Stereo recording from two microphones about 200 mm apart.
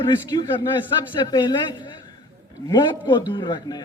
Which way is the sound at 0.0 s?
20° left (ahead or behind).